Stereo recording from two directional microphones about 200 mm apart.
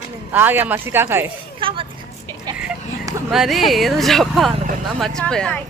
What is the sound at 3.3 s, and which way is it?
Speech, centre (ahead or behind).